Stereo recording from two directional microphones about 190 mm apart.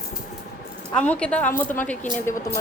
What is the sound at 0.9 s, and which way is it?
A woman's voice, 5° left (ahead or behind).